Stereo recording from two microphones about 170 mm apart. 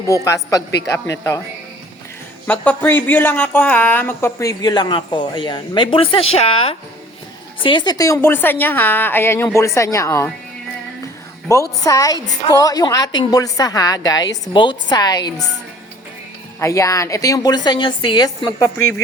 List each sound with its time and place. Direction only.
0.1 s a woman's voice: 20° left (ahead or behind)
2.5 s a woman's voice: 10° left (ahead or behind)
11.8 s speech: 20° left (ahead or behind)
16.6 s speech: 20° left (ahead or behind)